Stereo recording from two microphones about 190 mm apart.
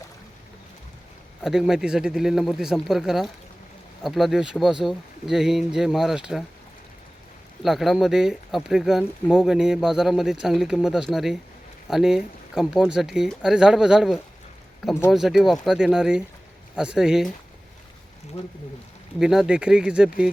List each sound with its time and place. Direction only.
1.4 s speech: centre (ahead or behind)
7.6 s speech: centre (ahead or behind)
18.3 s speech: 30° left (ahead or behind)
19.2 s speech: centre (ahead or behind)